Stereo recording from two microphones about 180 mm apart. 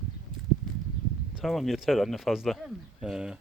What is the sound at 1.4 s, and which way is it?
Speech, centre (ahead or behind).